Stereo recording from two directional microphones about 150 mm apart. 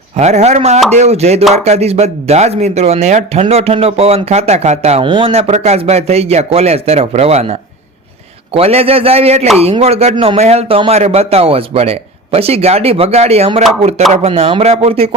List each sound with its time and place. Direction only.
0.2 s a man's voice: 50° right (ahead or behind)
8.5 s a man's voice: 40° right (ahead or behind)